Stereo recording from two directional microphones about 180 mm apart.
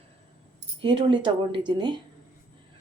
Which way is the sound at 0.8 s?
25° right (ahead or behind).